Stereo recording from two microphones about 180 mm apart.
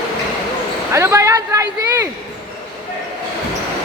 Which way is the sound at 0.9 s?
15° right (ahead or behind).